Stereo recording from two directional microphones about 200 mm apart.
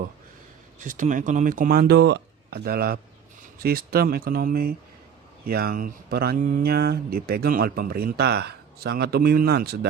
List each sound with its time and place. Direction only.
0.9 s speech: 40° right (ahead or behind)